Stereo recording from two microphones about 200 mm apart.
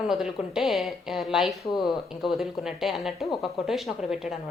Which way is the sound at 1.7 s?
20° left (ahead or behind).